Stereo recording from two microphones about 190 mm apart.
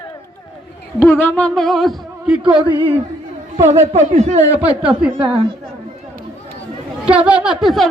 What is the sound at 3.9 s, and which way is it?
Speech, 35° right (ahead or behind).